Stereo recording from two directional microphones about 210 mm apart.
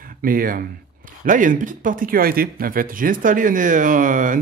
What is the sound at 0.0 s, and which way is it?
Speech, 40° right (ahead or behind).